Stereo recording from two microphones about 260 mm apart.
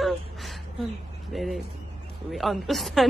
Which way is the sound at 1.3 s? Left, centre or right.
Centre.